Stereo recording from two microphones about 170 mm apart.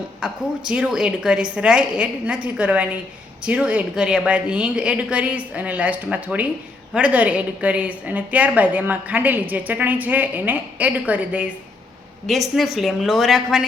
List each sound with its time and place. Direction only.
0.2 s a woman's voice: 5° right (ahead or behind)